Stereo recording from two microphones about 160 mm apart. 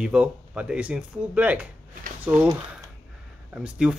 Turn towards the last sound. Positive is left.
turn(degrees=-5)  # may be behind; listen again after turning